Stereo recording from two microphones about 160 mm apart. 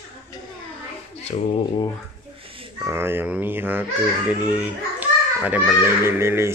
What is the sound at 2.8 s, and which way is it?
A child's voice, 15° right (ahead or behind).